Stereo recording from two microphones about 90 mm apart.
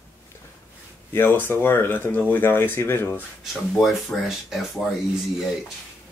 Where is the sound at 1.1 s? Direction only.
25° left (ahead or behind).